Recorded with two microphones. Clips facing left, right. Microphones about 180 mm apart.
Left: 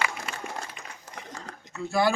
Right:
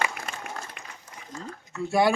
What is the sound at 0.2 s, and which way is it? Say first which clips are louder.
Applause: even; 60° right (ahead or behind).